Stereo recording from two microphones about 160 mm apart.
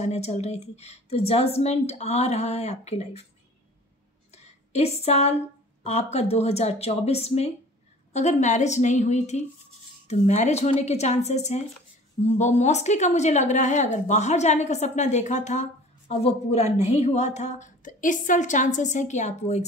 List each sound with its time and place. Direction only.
0.0 s speech: 45° left (ahead or behind)
4.3 s a sound: 40° left (ahead or behind)
5.9 s a woman's voice: 45° left (ahead or behind)